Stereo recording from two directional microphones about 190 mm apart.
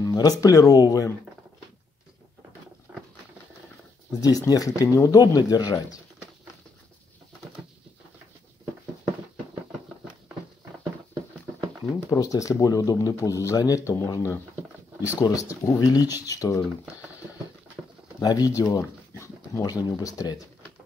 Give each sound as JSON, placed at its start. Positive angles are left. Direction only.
{"t": 0.0, "sound": "a sound", "side_deg": 20}
{"t": 0.4, "sound": "speech", "side_deg": 20}
{"t": 2.9, "sound": "patter", "side_deg": -10}
{"t": 4.2, "sound": "speech", "side_deg": 20}
{"t": 12.1, "sound": "speech", "side_deg": 15}
{"t": 18.2, "sound": "speech", "side_deg": 20}
{"t": 18.6, "sound": "dog", "side_deg": 15}
{"t": 19.8, "sound": "speech", "side_deg": 20}